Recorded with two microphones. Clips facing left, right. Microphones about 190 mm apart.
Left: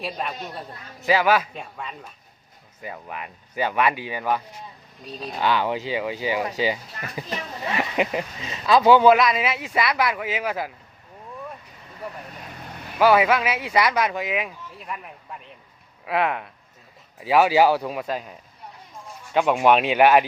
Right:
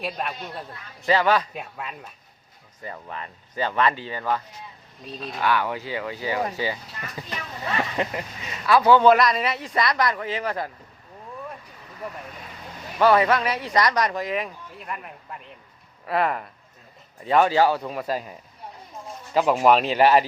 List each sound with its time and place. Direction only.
0.0 s speech: centre (ahead or behind)
1.5 s speech: 5° right (ahead or behind)
2.8 s speech: 10° left (ahead or behind)
9.0 s speech: 5° left (ahead or behind)
13.0 s speech: 5° left (ahead or behind)